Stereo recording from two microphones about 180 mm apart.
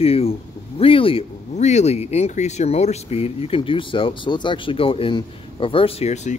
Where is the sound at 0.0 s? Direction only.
35° left (ahead or behind).